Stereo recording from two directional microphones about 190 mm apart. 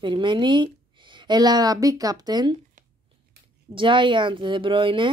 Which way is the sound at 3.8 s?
25° right (ahead or behind).